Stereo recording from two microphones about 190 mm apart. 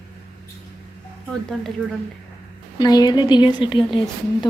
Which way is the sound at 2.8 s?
20° left (ahead or behind).